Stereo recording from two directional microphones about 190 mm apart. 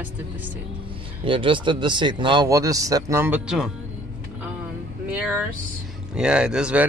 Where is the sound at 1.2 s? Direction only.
25° right (ahead or behind); by 3.7 s 5° right (ahead or behind).